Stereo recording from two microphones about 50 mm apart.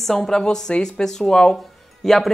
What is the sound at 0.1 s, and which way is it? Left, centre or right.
A woman's voice, centre.